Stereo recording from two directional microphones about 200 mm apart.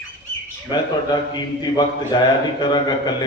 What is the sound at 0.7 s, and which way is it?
Speech, 20° left (ahead or behind).